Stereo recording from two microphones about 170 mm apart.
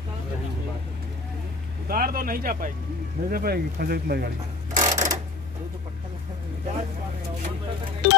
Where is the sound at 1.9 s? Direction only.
60° right (ahead or behind).